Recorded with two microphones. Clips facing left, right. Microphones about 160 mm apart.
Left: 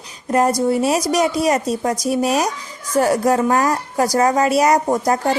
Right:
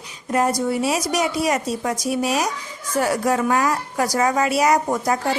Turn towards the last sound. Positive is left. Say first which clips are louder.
# left 3 dB
turn(degrees=40)  # may be behind; listen again after turning